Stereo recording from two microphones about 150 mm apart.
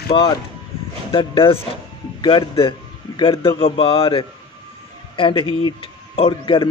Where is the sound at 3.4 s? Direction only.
35° left (ahead or behind).